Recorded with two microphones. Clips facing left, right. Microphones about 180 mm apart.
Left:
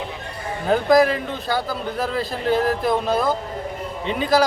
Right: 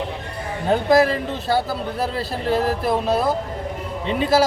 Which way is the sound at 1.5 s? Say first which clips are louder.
Right 3 dB; 30° right (ahead or behind).